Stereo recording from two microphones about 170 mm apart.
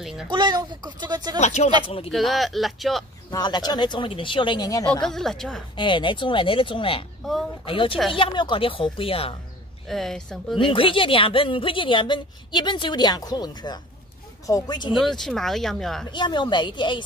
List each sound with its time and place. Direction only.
0.0 s a sound: 5° right (ahead or behind)
0.3 s speech: 25° right (ahead or behind)
1.4 s a woman's voice: 40° left (ahead or behind)
2.0 s speech: centre (ahead or behind)
3.3 s a woman's voice: 25° left (ahead or behind)
5.0 s speech: centre (ahead or behind)
5.8 s a woman's voice: 30° left (ahead or behind)
9.8 s speech: centre (ahead or behind)
10.6 s a woman's voice: 30° left (ahead or behind)
15.0 s speech: centre (ahead or behind)
16.1 s a woman's voice: 25° left (ahead or behind)